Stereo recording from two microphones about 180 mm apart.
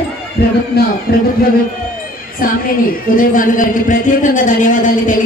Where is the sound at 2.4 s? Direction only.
50° left (ahead or behind).